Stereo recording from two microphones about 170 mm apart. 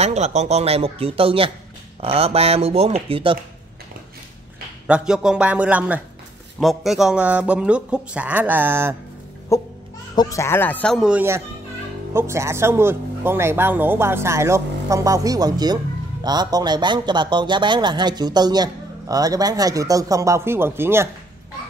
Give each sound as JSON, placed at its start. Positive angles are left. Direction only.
{"t": 0.0, "sound": "speech", "side_deg": -40}
{"t": 4.8, "sound": "speech", "side_deg": -5}
{"t": 9.5, "sound": "music", "side_deg": 20}
{"t": 10.1, "sound": "a man's voice", "side_deg": 15}